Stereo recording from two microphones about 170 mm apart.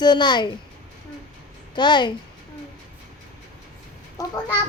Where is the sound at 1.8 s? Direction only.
25° left (ahead or behind).